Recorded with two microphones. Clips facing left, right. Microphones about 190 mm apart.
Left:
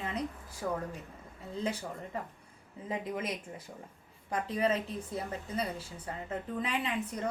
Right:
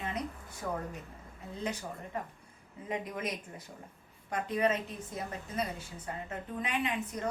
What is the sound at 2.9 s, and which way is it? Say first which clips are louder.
A woman's voice: left 1 dB; 30° left (ahead or behind).